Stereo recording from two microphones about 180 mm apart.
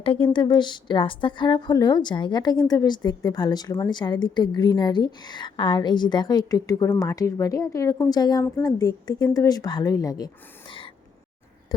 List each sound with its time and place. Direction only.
0.0 s a woman's voice: 30° left (ahead or behind)